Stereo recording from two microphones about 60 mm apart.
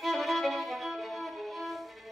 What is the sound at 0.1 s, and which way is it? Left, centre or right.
Violin, centre.